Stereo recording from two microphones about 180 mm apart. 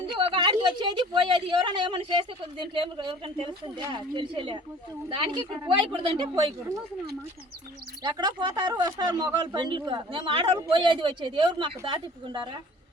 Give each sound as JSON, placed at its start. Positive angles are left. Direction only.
{"t": 0.2, "sound": "speech", "side_deg": -25}
{"t": 8.0, "sound": "speech", "side_deg": -25}